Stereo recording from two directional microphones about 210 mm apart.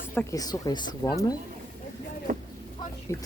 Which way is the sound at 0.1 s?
10° left (ahead or behind).